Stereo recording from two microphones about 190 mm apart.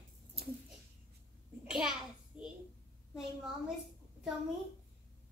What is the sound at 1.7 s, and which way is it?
Speech, 5° right (ahead or behind).